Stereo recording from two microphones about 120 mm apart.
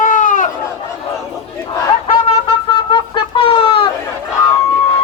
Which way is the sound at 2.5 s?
40° left (ahead or behind).